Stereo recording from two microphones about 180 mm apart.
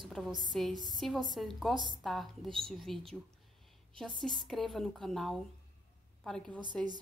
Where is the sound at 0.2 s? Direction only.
5° left (ahead or behind).